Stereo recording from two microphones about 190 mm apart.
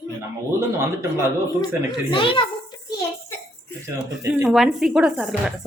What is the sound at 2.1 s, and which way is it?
Speech, 25° left (ahead or behind).